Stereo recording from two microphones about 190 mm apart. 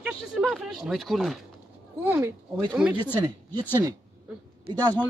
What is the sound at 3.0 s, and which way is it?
Speech, 20° right (ahead or behind).